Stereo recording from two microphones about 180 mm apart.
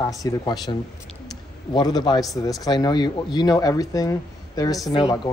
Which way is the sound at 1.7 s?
25° left (ahead or behind).